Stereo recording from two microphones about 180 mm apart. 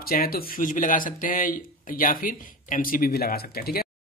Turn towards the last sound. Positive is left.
turn(degrees=60)  # may be behind; listen again after turning